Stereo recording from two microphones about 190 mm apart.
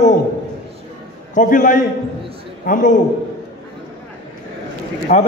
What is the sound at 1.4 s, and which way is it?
A man's voice, 45° left (ahead or behind).